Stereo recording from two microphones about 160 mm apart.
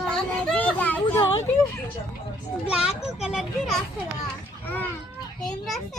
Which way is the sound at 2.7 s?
5° right (ahead or behind).